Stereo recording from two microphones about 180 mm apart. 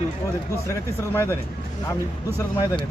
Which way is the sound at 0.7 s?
15° left (ahead or behind).